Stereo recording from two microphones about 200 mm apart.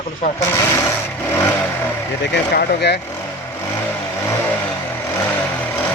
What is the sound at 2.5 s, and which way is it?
Speech, 55° left (ahead or behind).